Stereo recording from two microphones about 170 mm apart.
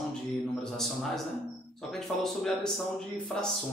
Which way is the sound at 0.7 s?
Centre (ahead or behind).